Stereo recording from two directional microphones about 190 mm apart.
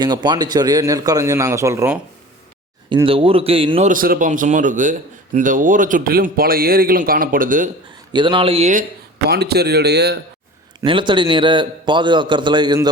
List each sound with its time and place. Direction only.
0.0 s speech: 20° right (ahead or behind)
2.9 s a man's voice: 25° right (ahead or behind)
3.8 s a man's voice: 45° right (ahead or behind)
8.1 s a man's voice: 25° right (ahead or behind)
9.3 s speech: 55° right (ahead or behind)
10.8 s a man's voice: 25° right (ahead or behind)